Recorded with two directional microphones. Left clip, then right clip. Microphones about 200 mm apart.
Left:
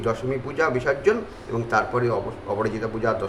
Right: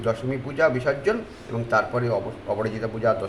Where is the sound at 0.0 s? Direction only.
5° left (ahead or behind).